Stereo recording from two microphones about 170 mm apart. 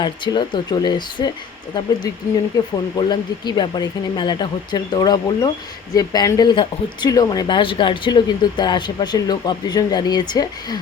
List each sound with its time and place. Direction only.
0.0 s speech: 25° left (ahead or behind)
2.5 s speech: 25° left (ahead or behind)